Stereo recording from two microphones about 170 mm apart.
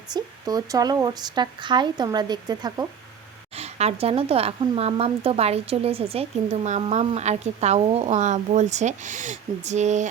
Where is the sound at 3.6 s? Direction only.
40° right (ahead or behind).